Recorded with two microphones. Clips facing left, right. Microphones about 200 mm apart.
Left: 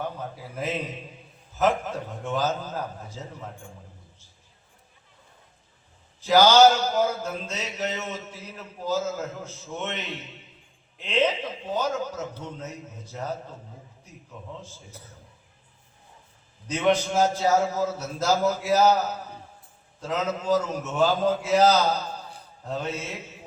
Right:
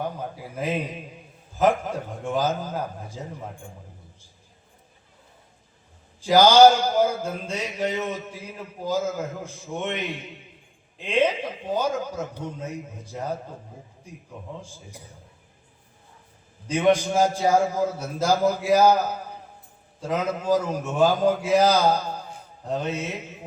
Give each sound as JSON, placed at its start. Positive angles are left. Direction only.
{"t": 0.0, "sound": "a man's voice", "side_deg": -10}
{"t": 6.2, "sound": "a man's voice", "side_deg": -10}
{"t": 14.6, "sound": "a man's voice", "side_deg": -15}
{"t": 16.6, "sound": "a man's voice", "side_deg": -10}